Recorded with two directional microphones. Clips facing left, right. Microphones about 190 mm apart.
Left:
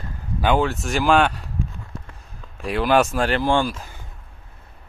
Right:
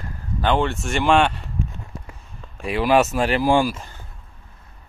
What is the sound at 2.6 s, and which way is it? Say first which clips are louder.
Speech: right 1 dB; centre (ahead or behind).